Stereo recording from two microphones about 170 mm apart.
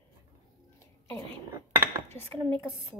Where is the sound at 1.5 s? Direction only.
15° right (ahead or behind).